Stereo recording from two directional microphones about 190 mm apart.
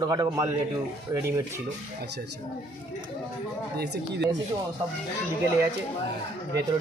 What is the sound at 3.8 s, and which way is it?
Speech, 65° right (ahead or behind).